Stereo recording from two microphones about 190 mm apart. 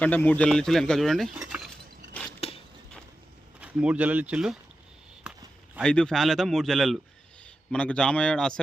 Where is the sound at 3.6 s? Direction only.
5° right (ahead or behind).